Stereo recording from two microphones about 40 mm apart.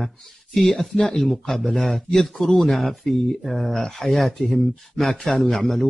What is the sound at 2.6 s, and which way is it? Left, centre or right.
A man's voice, centre.